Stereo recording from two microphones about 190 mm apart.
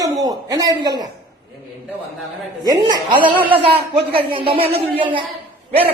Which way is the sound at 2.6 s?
20° right (ahead or behind).